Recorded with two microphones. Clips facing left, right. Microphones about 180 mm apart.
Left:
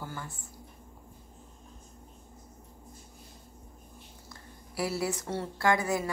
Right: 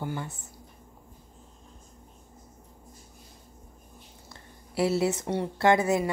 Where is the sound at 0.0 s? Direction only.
20° right (ahead or behind).